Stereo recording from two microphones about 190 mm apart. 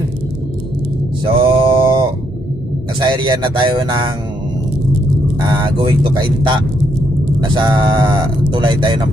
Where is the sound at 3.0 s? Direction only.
25° right (ahead or behind).